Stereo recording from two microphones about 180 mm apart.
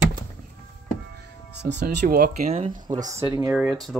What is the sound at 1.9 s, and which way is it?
Speech, 60° right (ahead or behind).